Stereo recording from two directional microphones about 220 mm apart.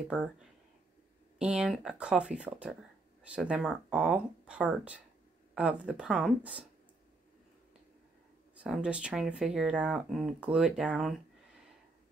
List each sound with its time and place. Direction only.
0.1 s speech: 5° right (ahead or behind)
8.5 s speech: 5° right (ahead or behind)